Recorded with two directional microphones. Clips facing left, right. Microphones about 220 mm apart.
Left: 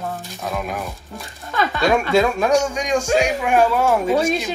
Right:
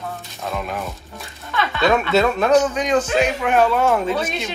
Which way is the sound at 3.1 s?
45° left (ahead or behind).